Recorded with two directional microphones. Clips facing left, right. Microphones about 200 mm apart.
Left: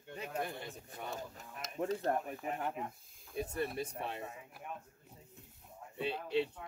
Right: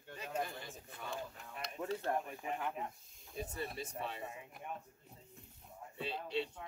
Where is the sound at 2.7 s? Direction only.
Centre (ahead or behind).